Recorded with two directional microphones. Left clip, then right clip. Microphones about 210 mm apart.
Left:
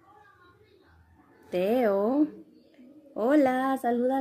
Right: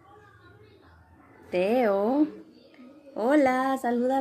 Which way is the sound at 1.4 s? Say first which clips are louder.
Right 1 dB; 30° left (ahead or behind).